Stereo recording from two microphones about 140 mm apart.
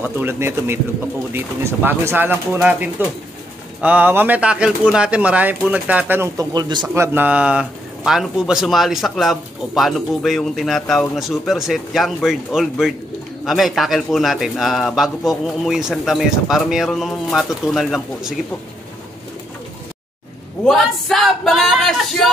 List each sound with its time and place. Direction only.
0.0 s speech: 15° right (ahead or behind)
6.9 s speech: 15° right (ahead or behind)
20.6 s speech: centre (ahead or behind)